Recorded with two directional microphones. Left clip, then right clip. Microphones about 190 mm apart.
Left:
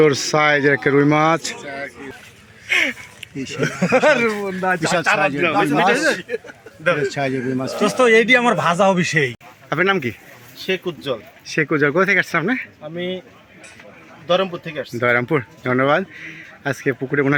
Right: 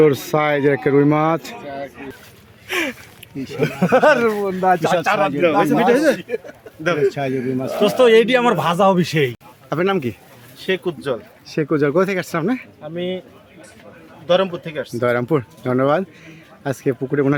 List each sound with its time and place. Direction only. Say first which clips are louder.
0.0 s speech: even; 10° right (ahead or behind)
1.5 s speech: even; 20° right (ahead or behind)
2.6 s a sound: left 4 dB; 60° right (ahead or behind)
3.2 s a sound: left 1 dB; 10° left (ahead or behind)
3.6 s speech: right 2 dB; 15° right (ahead or behind)
5.0 s speech: left 3 dB; 35° right (ahead or behind)
5.4 s speech: right 2 dB; 70° right (ahead or behind)
7.0 s speech: right 2 dB; 5° left (ahead or behind)
7.8 s speech: right 2 dB; 10° right (ahead or behind)
9.6 s speech: left 1 dB; 5° right (ahead or behind)
14.3 s speech: right 2 dB; 5° right (ahead or behind)